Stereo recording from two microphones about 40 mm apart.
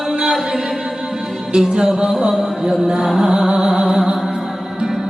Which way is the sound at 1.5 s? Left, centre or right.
Centre.